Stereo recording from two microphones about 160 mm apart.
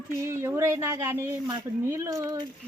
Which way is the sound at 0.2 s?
15° right (ahead or behind).